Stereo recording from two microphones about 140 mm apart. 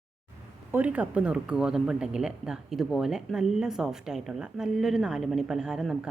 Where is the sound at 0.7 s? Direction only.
10° right (ahead or behind).